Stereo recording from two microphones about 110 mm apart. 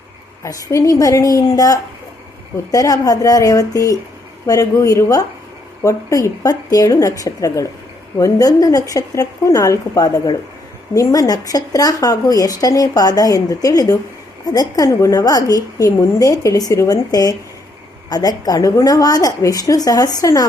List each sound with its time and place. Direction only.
0.4 s a woman's voice: 30° left (ahead or behind)